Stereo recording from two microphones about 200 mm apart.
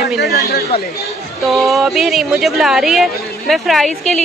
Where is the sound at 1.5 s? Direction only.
Centre (ahead or behind).